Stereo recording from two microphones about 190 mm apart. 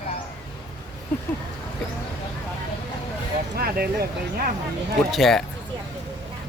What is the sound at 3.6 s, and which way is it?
Speech, 55° right (ahead or behind).